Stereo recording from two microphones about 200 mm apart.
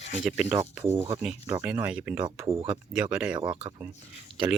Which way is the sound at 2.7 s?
5° right (ahead or behind).